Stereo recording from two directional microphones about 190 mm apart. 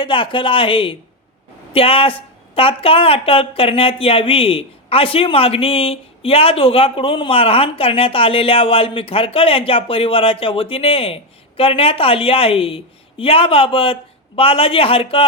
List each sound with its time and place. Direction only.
0.0 s a woman's voice: 25° left (ahead or behind)